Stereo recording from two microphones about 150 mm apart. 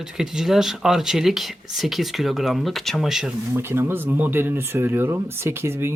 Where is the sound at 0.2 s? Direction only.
5° right (ahead or behind).